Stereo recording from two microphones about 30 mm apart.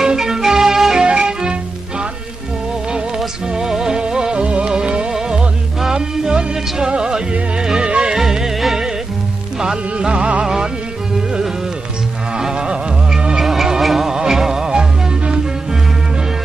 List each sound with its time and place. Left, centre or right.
0.0 s music: centre
1.0 s music: right
3.5 s music: centre; by 8.1 s right
8.2 s music: centre
9.9 s music: right
10.4 s music: right
12.4 s music: right
13.4 s music: centre
14.0 s music: centre; by 15.4 s right